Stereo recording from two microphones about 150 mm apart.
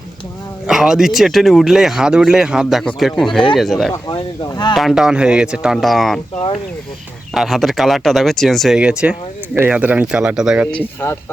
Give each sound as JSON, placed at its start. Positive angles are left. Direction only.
{"t": 0.7, "sound": "speech", "side_deg": -5}
{"t": 4.1, "sound": "speech", "side_deg": 30}
{"t": 4.7, "sound": "speech", "side_deg": 0}
{"t": 7.3, "sound": "speech", "side_deg": 0}